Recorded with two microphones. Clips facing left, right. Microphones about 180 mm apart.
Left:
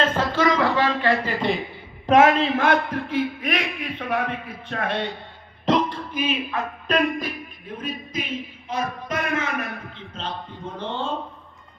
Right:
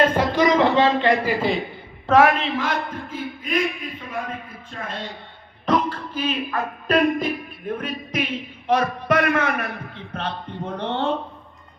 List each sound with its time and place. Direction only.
0.0 s a sound: 15° right (ahead or behind)
2.0 s a man's voice: 20° left (ahead or behind)
2.6 s a man's voice: 65° left (ahead or behind)
5.6 s speech: 20° left (ahead or behind)
6.1 s speech: 10° left (ahead or behind)
6.9 s music: 10° right (ahead or behind)
7.7 s a man's voice: 65° right (ahead or behind)